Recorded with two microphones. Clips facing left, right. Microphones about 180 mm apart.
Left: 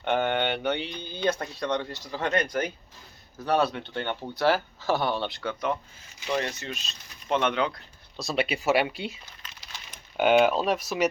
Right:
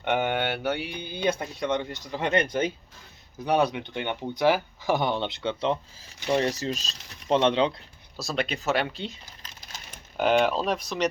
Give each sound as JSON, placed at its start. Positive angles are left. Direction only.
{"t": 0.0, "sound": "speech", "side_deg": -10}
{"t": 8.1, "sound": "speech", "side_deg": 0}
{"t": 9.4, "sound": "crumpling", "side_deg": -45}
{"t": 10.2, "sound": "speech", "side_deg": 5}